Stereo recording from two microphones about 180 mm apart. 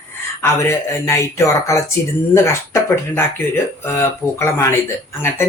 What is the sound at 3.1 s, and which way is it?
Speech, 15° left (ahead or behind).